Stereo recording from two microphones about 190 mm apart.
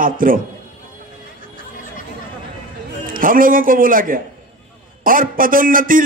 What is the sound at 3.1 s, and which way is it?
A man's voice, 45° right (ahead or behind).